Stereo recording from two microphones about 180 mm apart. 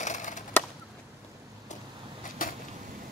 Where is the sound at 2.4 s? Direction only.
50° left (ahead or behind).